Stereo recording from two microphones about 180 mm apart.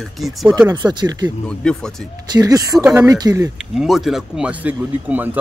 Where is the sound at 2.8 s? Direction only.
10° right (ahead or behind).